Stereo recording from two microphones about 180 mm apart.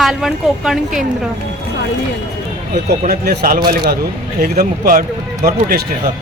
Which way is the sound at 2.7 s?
45° right (ahead or behind).